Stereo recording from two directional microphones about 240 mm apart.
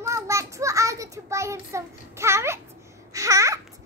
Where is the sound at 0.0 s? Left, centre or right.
Centre.